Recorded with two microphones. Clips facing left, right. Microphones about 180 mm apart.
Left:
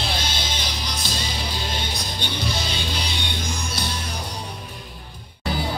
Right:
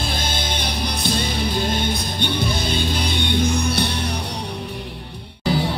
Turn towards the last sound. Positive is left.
turn(degrees=-60)  # may be behind; listen again after turning